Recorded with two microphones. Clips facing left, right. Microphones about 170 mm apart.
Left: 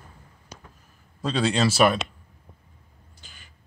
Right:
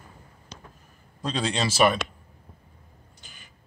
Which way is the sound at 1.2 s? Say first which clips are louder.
Left 4 dB; 5° left (ahead or behind).